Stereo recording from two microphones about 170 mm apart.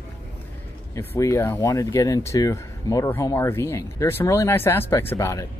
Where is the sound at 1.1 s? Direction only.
15° left (ahead or behind).